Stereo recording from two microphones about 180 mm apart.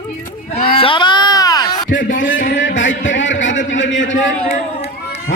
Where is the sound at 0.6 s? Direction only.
30° left (ahead or behind).